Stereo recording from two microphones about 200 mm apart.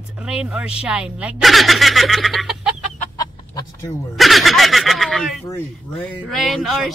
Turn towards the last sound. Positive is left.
turn(degrees=0)  # may be behind; listen again after turning